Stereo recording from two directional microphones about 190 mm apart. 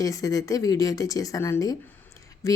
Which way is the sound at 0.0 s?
20° left (ahead or behind).